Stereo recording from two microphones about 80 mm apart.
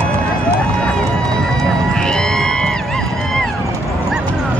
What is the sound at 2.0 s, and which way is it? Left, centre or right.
Music, centre.